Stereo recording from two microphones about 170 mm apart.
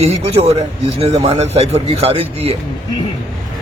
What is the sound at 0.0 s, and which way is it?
Speech, 35° right (ahead or behind).